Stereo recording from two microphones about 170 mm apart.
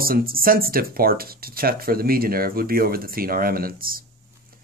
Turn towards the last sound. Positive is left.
turn(degrees=-60)  # may be behind; listen again after turning